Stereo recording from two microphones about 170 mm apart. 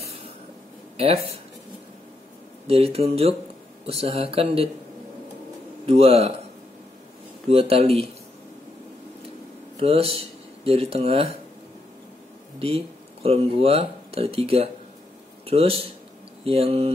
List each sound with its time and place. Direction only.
0.9 s speech: 35° right (ahead or behind)
2.6 s speech: 35° right (ahead or behind)
5.9 s speech: 35° right (ahead or behind)
7.4 s speech: 35° right (ahead or behind)
9.8 s speech: 35° right (ahead or behind)
12.5 s speech: 35° right (ahead or behind)